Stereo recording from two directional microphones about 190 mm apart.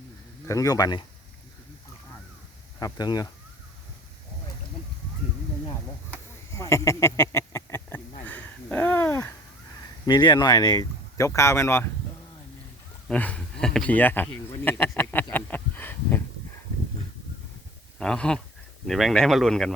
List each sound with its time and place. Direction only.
0.4 s speech: 15° left (ahead or behind)
2.7 s speech: 20° left (ahead or behind)
6.5 s speech: 15° left (ahead or behind)
8.3 s a sound: 10° left (ahead or behind)
10.1 s speech: 25° left (ahead or behind)
13.1 s speech: 5° left (ahead or behind)
18.0 s speech: 5° left (ahead or behind)